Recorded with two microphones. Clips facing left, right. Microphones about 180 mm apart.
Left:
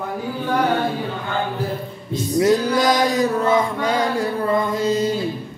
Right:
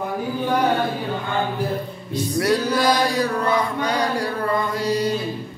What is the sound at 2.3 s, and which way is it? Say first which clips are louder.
Chant: left 4 dB; 20° left (ahead or behind).